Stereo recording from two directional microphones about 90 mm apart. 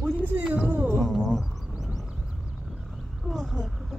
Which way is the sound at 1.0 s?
5° left (ahead or behind).